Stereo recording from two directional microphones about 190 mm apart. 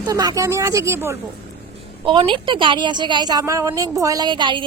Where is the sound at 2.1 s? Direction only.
25° right (ahead or behind).